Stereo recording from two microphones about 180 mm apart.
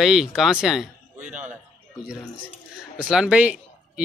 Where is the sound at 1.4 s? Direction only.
5° right (ahead or behind).